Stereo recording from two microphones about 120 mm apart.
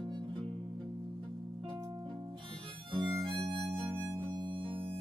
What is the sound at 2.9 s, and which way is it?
Harmonica, 50° right (ahead or behind).